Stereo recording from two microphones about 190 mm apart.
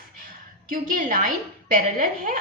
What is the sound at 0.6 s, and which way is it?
A woman's voice, 45° right (ahead or behind).